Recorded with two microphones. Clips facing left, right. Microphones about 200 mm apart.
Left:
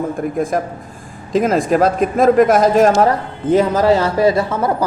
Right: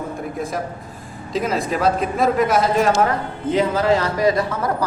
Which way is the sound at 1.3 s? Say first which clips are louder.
Left 7 dB; 45° left (ahead or behind).